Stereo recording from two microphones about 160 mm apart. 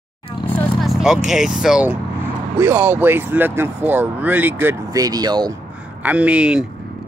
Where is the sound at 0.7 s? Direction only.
Centre (ahead or behind); by 5.5 s 25° right (ahead or behind).